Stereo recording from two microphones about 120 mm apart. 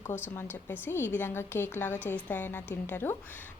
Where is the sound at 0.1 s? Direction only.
20° left (ahead or behind).